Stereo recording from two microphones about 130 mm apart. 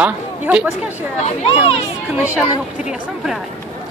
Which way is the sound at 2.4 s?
5° right (ahead or behind).